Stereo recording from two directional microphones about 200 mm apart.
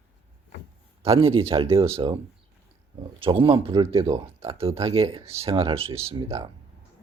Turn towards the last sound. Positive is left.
turn(degrees=-30)  # may be behind; listen again after turning